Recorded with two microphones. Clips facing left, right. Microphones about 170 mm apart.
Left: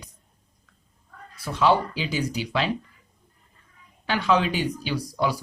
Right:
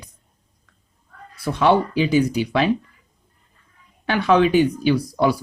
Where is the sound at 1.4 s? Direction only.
60° right (ahead or behind).